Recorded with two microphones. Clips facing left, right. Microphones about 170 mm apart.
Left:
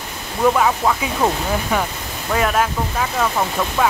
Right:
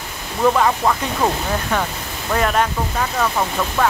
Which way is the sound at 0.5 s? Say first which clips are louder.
Even; centre (ahead or behind).